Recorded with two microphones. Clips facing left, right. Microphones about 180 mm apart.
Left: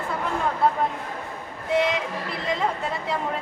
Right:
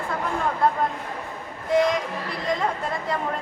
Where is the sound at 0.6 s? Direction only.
5° left (ahead or behind).